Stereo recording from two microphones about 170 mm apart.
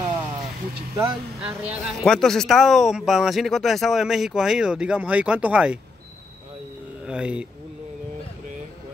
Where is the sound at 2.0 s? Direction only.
Centre (ahead or behind).